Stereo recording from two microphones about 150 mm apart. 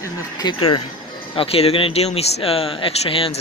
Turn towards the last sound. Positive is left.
turn(degrees=35)  # may be behind; listen again after turning